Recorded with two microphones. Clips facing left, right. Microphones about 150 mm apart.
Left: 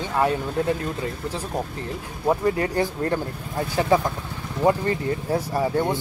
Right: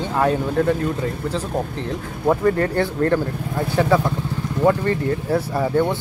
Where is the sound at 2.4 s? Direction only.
15° left (ahead or behind).